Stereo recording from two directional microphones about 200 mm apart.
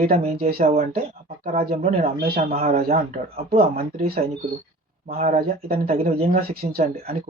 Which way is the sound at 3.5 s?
45° right (ahead or behind).